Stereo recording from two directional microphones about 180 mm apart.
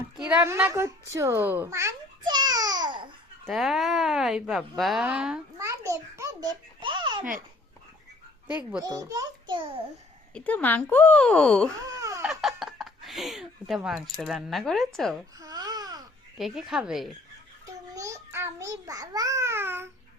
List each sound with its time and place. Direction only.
0.2 s a child's voice: 5° right (ahead or behind); by 3.1 s 25° right (ahead or behind)
3.4 s speech: centre (ahead or behind)
5.9 s babbling: 15° right (ahead or behind)
8.8 s a child's voice: 20° right (ahead or behind)
10.3 s speech: 10° left (ahead or behind)
11.9 s a sound: 20° right (ahead or behind)
12.2 s a sound: centre (ahead or behind)
15.4 s babbling: 20° right (ahead or behind)
16.4 s speech: centre (ahead or behind)
17.7 s babbling: 20° right (ahead or behind)